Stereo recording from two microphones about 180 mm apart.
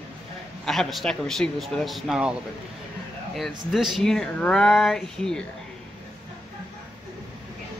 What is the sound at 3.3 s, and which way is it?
Speech, centre (ahead or behind).